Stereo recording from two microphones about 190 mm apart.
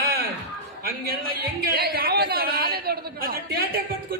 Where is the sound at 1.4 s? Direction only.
55° right (ahead or behind).